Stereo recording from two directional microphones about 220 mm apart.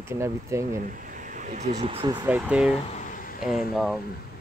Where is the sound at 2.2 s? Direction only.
5° right (ahead or behind).